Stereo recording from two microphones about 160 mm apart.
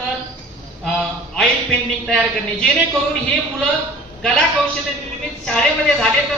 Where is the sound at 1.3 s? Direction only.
5° left (ahead or behind).